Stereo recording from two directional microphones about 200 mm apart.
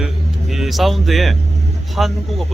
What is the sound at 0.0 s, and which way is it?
Music, centre (ahead or behind).